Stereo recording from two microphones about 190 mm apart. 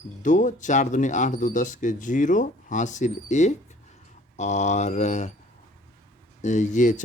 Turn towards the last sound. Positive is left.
turn(degrees=40)  # may be behind; listen again after turning